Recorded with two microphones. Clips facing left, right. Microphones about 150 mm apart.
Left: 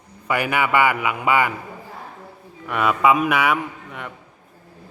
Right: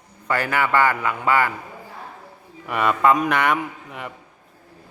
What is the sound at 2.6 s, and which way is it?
A man's voice, centre (ahead or behind).